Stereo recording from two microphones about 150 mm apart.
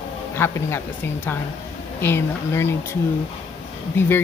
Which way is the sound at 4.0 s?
15° left (ahead or behind).